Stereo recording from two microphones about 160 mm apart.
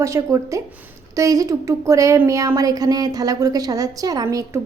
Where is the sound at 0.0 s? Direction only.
20° right (ahead or behind).